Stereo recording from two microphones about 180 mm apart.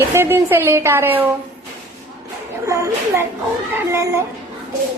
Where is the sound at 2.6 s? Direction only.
15° right (ahead or behind).